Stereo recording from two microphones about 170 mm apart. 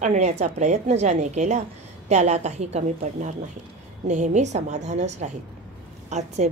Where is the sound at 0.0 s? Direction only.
45° right (ahead or behind).